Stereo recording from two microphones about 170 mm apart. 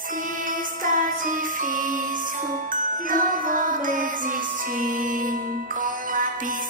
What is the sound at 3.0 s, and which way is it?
Music, 55° right (ahead or behind).